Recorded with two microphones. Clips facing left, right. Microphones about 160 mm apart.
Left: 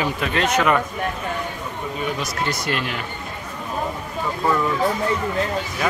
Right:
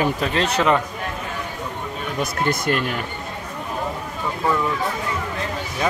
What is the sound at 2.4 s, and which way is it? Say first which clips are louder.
Speech: right 4 dB; 50° right (ahead or behind).